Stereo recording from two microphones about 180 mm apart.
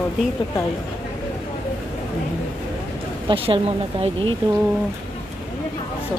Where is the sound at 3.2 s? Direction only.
30° right (ahead or behind).